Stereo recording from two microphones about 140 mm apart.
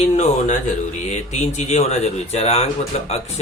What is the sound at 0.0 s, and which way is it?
Speech, 55° left (ahead or behind).